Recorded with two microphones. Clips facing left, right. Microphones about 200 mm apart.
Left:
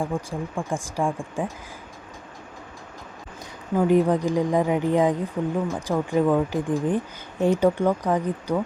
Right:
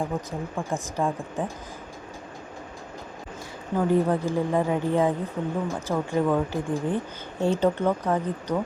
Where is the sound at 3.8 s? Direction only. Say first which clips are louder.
Left 3 dB; 15° left (ahead or behind).